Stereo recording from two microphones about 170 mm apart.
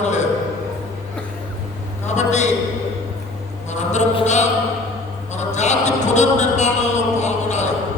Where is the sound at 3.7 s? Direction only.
45° left (ahead or behind).